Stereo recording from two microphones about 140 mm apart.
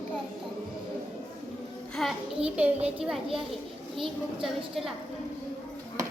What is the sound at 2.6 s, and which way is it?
A child's voice, 10° right (ahead or behind).